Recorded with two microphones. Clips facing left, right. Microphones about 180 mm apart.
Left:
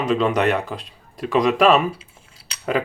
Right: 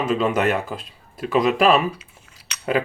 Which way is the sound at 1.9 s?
30° left (ahead or behind).